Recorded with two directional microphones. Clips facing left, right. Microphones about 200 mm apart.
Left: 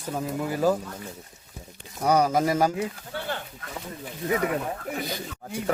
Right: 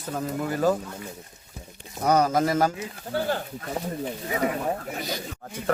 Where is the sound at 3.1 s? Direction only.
40° right (ahead or behind).